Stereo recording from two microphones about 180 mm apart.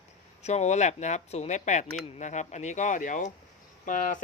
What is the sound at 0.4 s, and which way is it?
Speech, 40° left (ahead or behind).